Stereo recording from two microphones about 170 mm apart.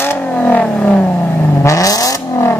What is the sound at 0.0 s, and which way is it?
Vehicle, 10° left (ahead or behind).